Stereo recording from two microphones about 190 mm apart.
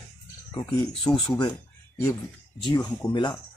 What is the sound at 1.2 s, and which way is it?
Speech, 20° left (ahead or behind).